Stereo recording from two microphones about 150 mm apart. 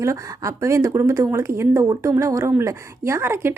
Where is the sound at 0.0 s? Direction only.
20° right (ahead or behind).